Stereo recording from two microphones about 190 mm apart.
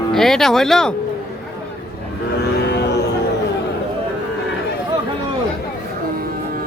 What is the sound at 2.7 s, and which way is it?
Music, 60° left (ahead or behind).